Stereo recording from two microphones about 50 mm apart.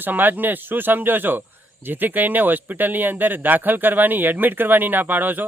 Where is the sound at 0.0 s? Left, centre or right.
Right.